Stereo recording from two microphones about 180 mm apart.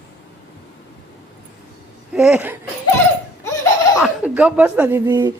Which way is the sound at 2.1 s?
5° right (ahead or behind).